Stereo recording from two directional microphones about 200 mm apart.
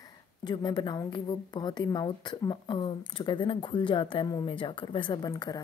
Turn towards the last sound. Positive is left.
turn(degrees=20)  # may be behind; listen again after turning